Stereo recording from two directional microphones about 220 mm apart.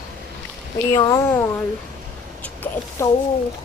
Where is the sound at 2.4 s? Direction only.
10° left (ahead or behind).